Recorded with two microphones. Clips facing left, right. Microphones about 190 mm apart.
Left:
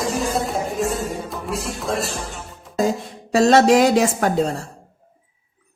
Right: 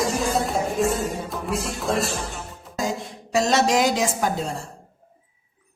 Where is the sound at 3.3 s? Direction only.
60° left (ahead or behind).